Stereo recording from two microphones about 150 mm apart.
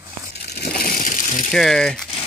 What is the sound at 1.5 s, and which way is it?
Speech, 5° left (ahead or behind).